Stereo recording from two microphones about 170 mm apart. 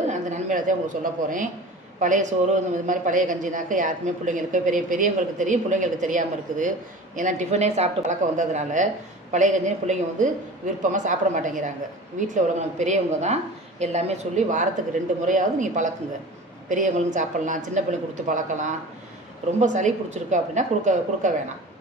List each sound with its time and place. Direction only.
0.1 s a woman's voice: 45° right (ahead or behind)